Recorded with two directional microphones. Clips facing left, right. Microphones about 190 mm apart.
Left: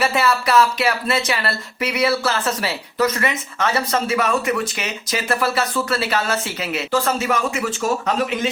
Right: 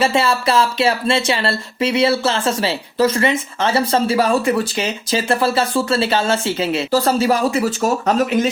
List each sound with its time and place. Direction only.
0.0 s speech: 25° right (ahead or behind)